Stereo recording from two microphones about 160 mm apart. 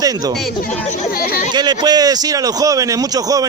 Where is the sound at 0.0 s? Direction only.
20° right (ahead or behind).